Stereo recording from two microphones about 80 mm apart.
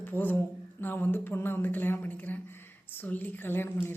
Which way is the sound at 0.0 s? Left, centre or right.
Left.